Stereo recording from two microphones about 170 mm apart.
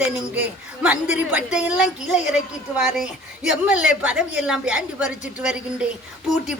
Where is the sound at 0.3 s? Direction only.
10° right (ahead or behind).